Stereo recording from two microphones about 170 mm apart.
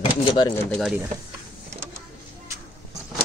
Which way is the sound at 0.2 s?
25° left (ahead or behind).